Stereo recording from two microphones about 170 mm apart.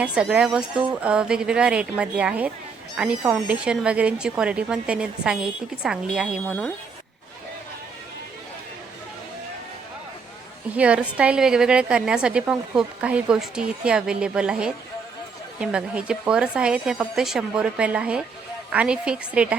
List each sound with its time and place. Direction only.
0.0 s a woman's voice: 5° right (ahead or behind)
6.4 s speech: 10° left (ahead or behind)
10.8 s a woman's voice: 5° right (ahead or behind)